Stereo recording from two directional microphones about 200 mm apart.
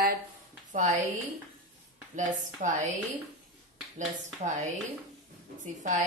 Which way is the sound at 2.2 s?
40° right (ahead or behind).